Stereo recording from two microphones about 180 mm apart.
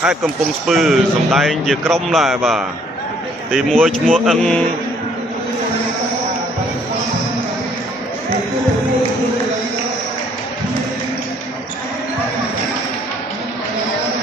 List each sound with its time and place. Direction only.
0.7 s a man's voice: centre (ahead or behind)